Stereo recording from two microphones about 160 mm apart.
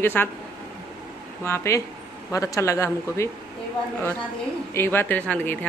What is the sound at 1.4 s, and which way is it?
Speech, 15° left (ahead or behind).